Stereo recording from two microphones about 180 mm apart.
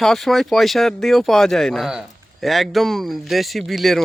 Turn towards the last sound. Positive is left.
turn(degrees=0)  # may be behind; listen again after turning